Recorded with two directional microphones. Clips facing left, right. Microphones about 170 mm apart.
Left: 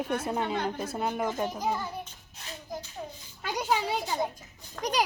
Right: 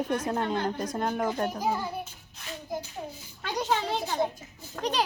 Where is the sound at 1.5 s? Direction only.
10° right (ahead or behind).